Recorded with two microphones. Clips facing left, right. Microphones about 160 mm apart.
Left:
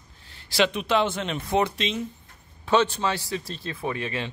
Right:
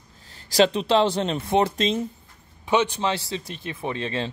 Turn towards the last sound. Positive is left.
turn(degrees=-30)  # may be behind; listen again after turning